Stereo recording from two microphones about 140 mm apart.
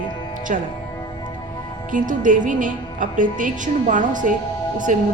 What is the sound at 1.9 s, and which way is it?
A woman's voice, 70° right (ahead or behind).